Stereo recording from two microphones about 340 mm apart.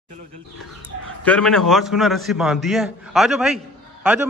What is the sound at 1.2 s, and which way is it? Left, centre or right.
A man's voice, centre.